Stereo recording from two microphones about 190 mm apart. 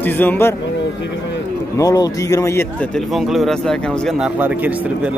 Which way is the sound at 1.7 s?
20° left (ahead or behind).